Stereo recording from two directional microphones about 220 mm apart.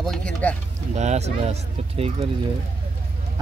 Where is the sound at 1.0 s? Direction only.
30° right (ahead or behind).